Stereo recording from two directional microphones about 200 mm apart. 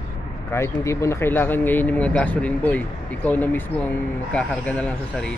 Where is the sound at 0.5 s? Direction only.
15° left (ahead or behind).